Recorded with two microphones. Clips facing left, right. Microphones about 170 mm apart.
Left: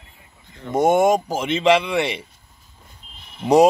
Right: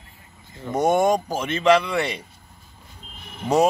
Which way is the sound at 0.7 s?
25° left (ahead or behind).